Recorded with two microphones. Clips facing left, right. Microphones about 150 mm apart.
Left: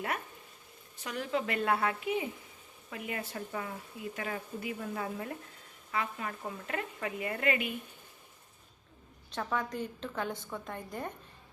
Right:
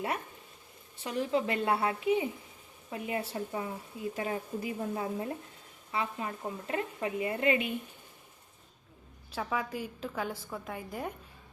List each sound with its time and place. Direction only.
1.0 s a woman's voice: 30° right (ahead or behind)
9.3 s a woman's voice: 5° right (ahead or behind)